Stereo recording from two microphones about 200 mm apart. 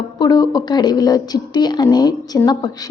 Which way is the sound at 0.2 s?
20° left (ahead or behind).